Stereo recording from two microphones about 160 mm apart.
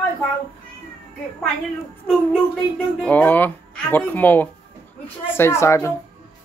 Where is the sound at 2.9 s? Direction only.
10° left (ahead or behind).